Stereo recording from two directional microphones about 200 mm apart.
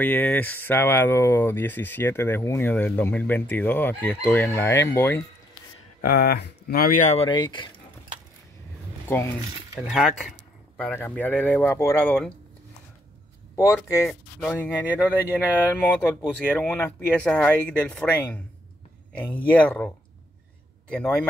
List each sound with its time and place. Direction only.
0.0 s speech: 10° left (ahead or behind)
5.9 s speech: 50° left (ahead or behind); by 7.7 s 20° left (ahead or behind)
9.8 s speech: centre (ahead or behind)
13.6 s speech: 15° left (ahead or behind)
20.9 s speech: 5° left (ahead or behind)